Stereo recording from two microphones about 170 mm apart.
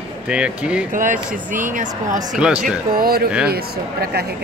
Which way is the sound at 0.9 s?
50° right (ahead or behind).